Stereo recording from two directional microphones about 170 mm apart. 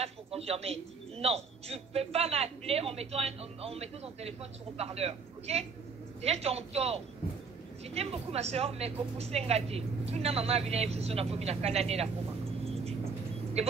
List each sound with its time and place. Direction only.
0.0 s a man's voice: 35° right (ahead or behind)
13.6 s speech: 40° right (ahead or behind)